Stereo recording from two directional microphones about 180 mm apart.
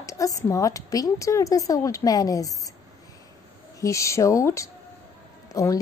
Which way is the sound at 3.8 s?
15° left (ahead or behind).